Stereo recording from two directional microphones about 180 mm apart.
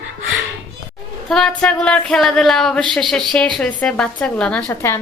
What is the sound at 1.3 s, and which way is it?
A woman's voice, 5° left (ahead or behind).